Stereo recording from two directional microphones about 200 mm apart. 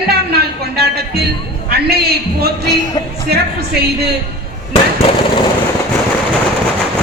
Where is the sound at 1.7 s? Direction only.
50° right (ahead or behind).